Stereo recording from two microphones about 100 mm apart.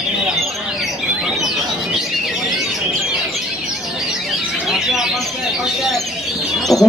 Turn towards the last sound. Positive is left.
turn(degrees=35)  # may be behind; listen again after turning